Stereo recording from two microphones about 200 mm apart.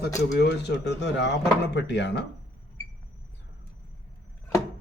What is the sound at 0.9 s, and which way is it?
Speech, 60° left (ahead or behind).